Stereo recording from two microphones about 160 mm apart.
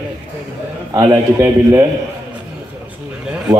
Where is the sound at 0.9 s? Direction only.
20° right (ahead or behind).